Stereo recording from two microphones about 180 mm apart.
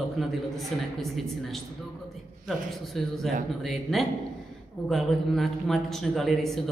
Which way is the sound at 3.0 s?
Centre (ahead or behind).